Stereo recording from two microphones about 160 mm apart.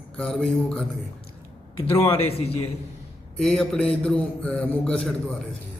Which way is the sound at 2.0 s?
35° left (ahead or behind).